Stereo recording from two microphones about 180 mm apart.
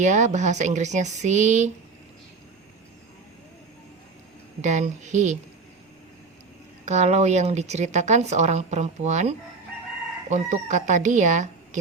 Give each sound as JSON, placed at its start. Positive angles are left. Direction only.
{"t": 0.0, "sound": "speech", "side_deg": -40}
{"t": 4.6, "sound": "speech", "side_deg": -40}
{"t": 6.8, "sound": "speech", "side_deg": -40}